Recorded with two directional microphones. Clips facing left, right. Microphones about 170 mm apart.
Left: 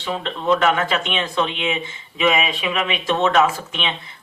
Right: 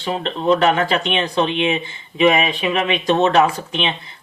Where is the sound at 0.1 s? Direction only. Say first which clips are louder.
Right 3 dB; 30° right (ahead or behind).